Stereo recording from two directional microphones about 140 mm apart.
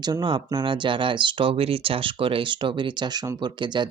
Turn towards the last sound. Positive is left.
turn(degrees=-35)  # may be behind; listen again after turning